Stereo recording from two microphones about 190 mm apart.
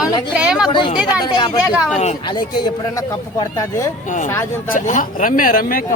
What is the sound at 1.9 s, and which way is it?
Speech, 35° left (ahead or behind).